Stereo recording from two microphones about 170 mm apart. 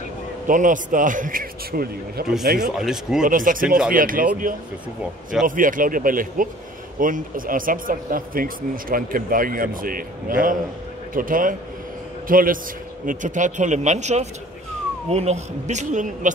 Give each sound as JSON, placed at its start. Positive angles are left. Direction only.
{"t": 0.5, "sound": "a man's voice", "side_deg": -50}
{"t": 2.6, "sound": "speech", "side_deg": 0}
{"t": 3.3, "sound": "a man's voice", "side_deg": -55}
{"t": 5.4, "sound": "a man's voice", "side_deg": -50}